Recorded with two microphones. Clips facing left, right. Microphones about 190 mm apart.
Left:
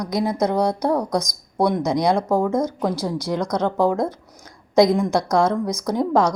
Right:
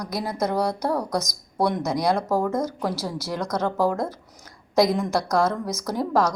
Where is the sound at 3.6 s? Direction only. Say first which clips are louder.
Left 3 dB; 15° left (ahead or behind).